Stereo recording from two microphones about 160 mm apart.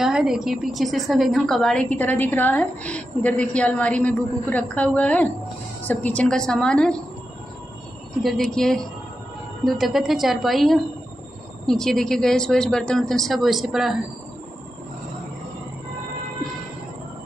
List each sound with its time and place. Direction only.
0.0 s a woman's voice: 5° right (ahead or behind)
8.2 s speech: centre (ahead or behind)